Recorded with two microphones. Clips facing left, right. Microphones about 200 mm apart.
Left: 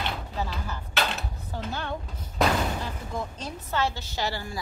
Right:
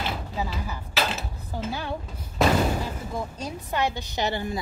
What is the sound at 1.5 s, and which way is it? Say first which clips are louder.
A woman's voice: right 2 dB; 10° right (ahead or behind).